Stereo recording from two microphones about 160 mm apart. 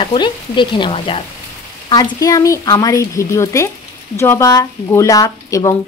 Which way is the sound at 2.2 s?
20° left (ahead or behind).